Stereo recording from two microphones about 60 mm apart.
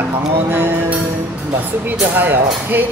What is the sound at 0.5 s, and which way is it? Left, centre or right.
Speech, right.